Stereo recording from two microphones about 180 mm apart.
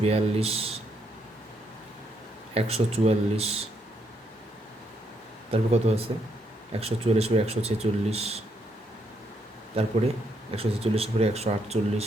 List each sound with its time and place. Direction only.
0.0 s speech: 35° right (ahead or behind)
2.6 s speech: 35° right (ahead or behind)
5.5 s speech: 35° right (ahead or behind)
10.5 s speech: 30° right (ahead or behind)